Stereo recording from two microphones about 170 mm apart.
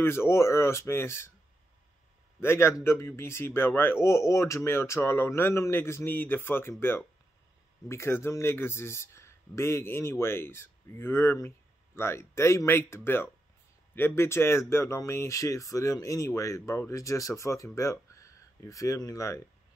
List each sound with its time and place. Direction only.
0.0 s speech: 15° left (ahead or behind)
2.4 s speech: 15° left (ahead or behind)